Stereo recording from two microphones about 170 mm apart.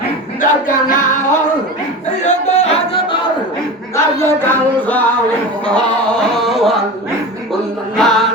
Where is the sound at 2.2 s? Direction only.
40° left (ahead or behind).